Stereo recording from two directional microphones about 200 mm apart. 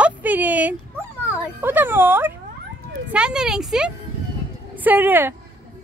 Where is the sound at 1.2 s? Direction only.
10° right (ahead or behind).